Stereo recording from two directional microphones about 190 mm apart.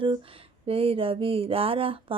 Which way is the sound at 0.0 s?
30° right (ahead or behind).